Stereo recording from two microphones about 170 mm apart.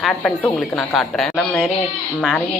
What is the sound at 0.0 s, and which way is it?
A woman's voice, centre (ahead or behind).